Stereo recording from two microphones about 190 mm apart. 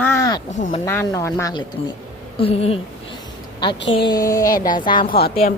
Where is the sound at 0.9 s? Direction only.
15° left (ahead or behind).